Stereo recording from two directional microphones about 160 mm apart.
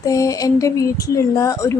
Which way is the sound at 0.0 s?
20° left (ahead or behind).